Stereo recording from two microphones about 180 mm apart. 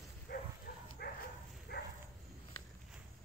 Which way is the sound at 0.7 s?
55° left (ahead or behind).